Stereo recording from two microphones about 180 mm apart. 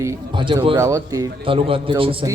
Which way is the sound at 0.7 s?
15° right (ahead or behind).